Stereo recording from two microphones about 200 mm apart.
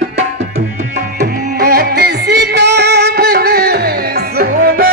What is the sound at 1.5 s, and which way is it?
Music, 50° right (ahead or behind).